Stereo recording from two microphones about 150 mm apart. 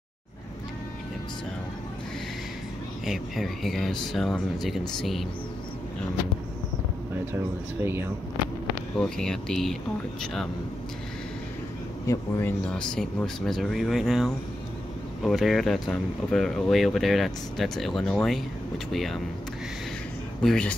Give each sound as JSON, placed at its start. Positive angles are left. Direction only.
{"t": 3.1, "sound": "speech", "side_deg": 0}
{"t": 7.3, "sound": "speech", "side_deg": -15}
{"t": 8.9, "sound": "speech", "side_deg": 5}
{"t": 12.1, "sound": "speech", "side_deg": 15}
{"t": 20.4, "sound": "speech", "side_deg": 5}